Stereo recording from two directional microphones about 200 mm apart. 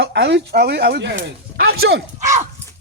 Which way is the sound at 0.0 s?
60° right (ahead or behind).